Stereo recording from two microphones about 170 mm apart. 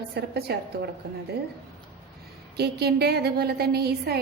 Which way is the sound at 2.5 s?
70° right (ahead or behind).